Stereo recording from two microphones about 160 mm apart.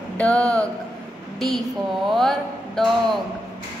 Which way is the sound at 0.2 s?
5° left (ahead or behind).